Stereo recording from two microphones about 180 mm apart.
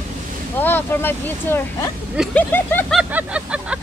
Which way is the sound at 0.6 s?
10° left (ahead or behind).